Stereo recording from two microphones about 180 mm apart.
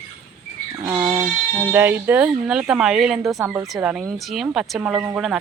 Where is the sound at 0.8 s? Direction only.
15° right (ahead or behind).